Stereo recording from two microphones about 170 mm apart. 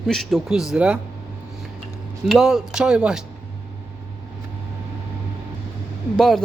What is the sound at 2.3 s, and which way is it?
Speech, centre (ahead or behind).